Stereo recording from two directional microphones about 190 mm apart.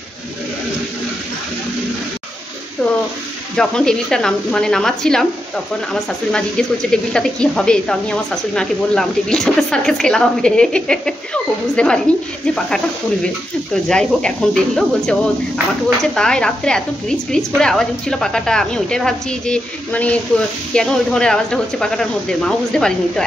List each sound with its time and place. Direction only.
3.5 s a woman's voice: 5° left (ahead or behind)